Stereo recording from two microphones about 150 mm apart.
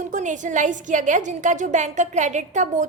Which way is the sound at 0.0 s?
55° right (ahead or behind).